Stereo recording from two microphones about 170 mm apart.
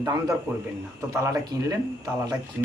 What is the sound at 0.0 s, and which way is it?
Speech, 20° right (ahead or behind).